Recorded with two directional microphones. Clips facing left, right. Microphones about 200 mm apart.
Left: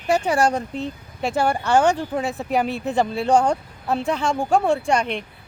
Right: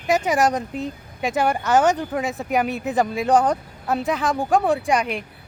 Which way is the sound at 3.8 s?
Centre (ahead or behind).